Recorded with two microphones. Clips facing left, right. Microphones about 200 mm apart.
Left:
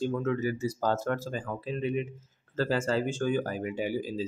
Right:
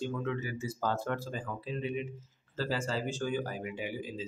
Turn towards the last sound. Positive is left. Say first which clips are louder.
# left 7 dB
turn(degrees=40)  # may be behind; listen again after turning